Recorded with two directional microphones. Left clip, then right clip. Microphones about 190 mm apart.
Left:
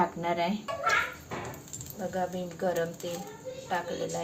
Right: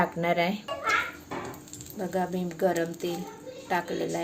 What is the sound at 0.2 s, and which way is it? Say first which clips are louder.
Speech: right 4 dB; 55° right (ahead or behind).